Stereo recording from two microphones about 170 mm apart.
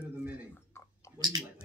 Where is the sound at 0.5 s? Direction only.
15° left (ahead or behind).